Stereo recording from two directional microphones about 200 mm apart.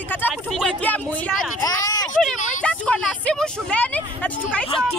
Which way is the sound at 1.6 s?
20° left (ahead or behind).